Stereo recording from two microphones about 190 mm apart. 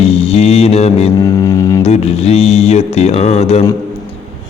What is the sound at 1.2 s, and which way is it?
Music, 20° left (ahead or behind).